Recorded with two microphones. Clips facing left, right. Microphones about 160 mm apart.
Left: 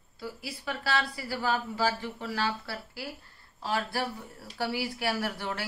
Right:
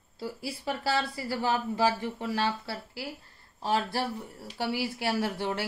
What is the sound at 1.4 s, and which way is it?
Speech, 25° right (ahead or behind).